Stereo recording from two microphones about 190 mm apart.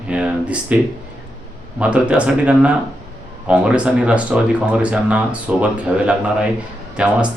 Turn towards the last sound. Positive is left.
turn(degrees=-5)  # may be behind; listen again after turning